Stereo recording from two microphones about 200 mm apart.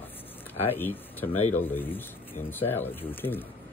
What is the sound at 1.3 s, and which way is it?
Speech, 30° left (ahead or behind).